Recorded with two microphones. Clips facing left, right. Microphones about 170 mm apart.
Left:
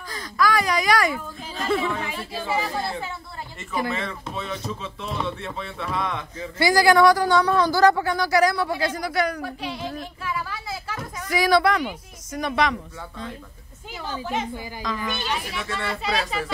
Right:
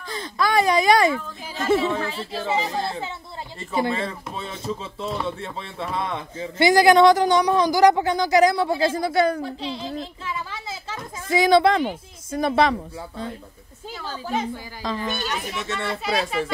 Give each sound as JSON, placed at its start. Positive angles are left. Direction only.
{"t": 0.1, "sound": "speech", "side_deg": -25}
{"t": 13.9, "sound": "a woman's voice", "side_deg": 15}
{"t": 14.3, "sound": "a woman's voice", "side_deg": -35}
{"t": 15.2, "sound": "speech", "side_deg": 0}
{"t": 15.6, "sound": "speech", "side_deg": -25}
{"t": 16.0, "sound": "speech", "side_deg": 0}